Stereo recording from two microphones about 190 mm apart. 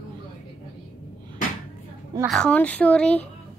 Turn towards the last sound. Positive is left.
turn(degrees=5)  # may be behind; listen again after turning